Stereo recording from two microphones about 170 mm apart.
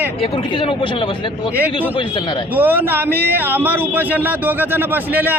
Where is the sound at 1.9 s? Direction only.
30° left (ahead or behind).